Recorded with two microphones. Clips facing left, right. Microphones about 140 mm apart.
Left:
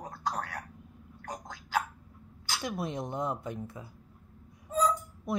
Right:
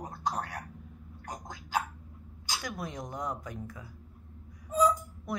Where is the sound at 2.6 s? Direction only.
25° left (ahead or behind).